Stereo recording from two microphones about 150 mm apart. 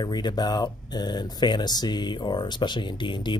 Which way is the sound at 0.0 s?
25° left (ahead or behind).